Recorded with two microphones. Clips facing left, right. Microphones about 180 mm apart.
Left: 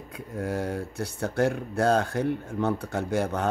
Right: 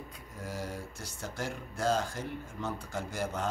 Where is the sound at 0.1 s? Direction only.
60° left (ahead or behind).